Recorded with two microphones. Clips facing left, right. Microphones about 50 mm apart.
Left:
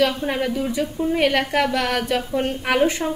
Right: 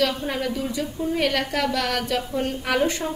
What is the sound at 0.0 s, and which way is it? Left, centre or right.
A woman's voice, left.